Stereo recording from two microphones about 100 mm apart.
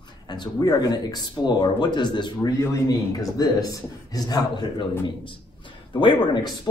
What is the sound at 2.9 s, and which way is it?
A man's voice, 35° left (ahead or behind).